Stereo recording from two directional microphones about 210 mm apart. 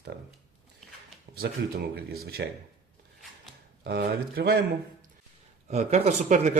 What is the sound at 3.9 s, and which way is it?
Speech, 50° right (ahead or behind).